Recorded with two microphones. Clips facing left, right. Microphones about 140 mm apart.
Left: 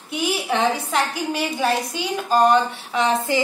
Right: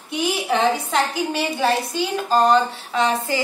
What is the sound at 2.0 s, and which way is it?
A woman's voice, 15° left (ahead or behind).